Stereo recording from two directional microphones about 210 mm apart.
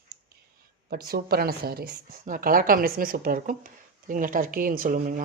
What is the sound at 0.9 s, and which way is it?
A woman's voice, 45° right (ahead or behind).